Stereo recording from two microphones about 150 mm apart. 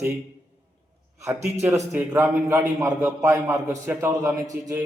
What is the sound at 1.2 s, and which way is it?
A man's voice, 20° right (ahead or behind).